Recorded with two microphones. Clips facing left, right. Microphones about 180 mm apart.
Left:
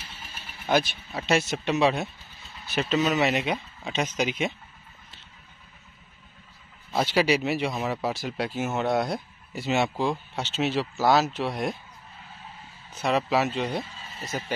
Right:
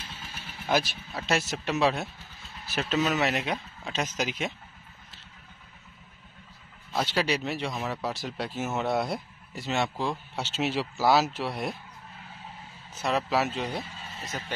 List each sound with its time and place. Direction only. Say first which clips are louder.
0.7 s speech: left 3 dB; centre (ahead or behind)
7.0 s speech: left 5 dB; 5° left (ahead or behind)
13.0 s speech: left 3 dB; centre (ahead or behind)